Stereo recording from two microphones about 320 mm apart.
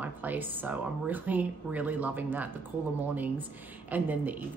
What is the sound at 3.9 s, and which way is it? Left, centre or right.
Speech, centre.